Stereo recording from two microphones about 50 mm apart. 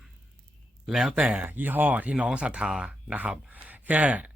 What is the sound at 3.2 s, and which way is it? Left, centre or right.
Speech, right.